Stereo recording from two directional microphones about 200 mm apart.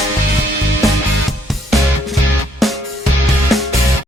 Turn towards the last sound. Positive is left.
turn(degrees=0)  # may be behind; listen again after turning